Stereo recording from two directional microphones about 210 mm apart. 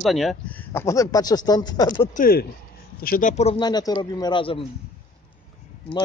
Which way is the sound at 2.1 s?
45° left (ahead or behind).